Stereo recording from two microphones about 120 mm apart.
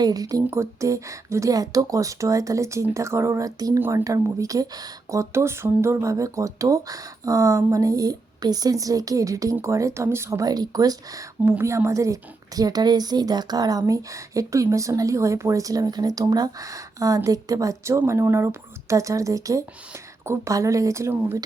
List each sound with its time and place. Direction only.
0.0 s speech: 30° right (ahead or behind)